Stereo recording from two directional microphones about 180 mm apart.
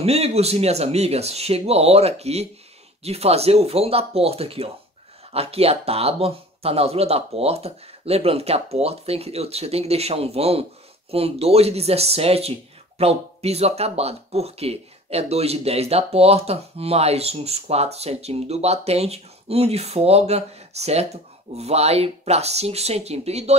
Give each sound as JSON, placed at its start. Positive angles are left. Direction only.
{"t": 0.0, "sound": "speech", "side_deg": -35}